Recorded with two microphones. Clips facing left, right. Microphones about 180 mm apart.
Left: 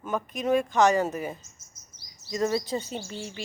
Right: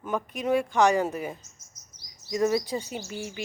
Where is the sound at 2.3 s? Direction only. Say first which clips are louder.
Right 2 dB; 15° right (ahead or behind).